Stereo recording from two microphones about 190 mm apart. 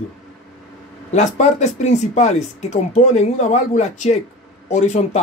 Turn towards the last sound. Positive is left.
turn(degrees=35)  # may be behind; listen again after turning